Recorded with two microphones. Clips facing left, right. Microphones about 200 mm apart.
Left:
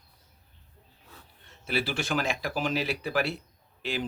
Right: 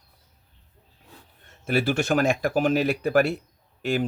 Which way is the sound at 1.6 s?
50° right (ahead or behind).